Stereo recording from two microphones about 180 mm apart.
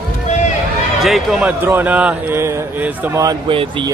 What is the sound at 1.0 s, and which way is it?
A man's voice, centre (ahead or behind).